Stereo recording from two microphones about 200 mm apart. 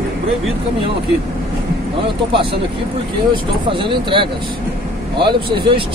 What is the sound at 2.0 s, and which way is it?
Speech, 25° right (ahead or behind).